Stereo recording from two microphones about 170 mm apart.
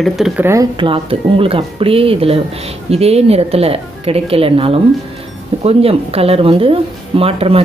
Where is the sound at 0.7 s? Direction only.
30° right (ahead or behind).